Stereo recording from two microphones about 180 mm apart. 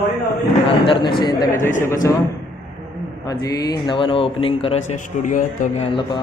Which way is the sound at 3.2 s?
20° left (ahead or behind).